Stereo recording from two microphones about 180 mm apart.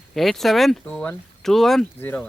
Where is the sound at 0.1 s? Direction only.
Centre (ahead or behind).